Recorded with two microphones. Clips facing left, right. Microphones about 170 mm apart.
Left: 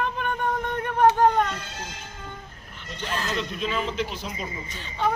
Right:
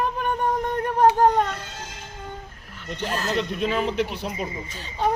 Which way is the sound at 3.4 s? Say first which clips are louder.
Right 4 dB; 60° right (ahead or behind).